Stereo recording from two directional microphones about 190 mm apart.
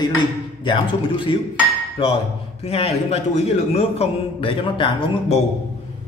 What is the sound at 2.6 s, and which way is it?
A man's voice, 35° left (ahead or behind).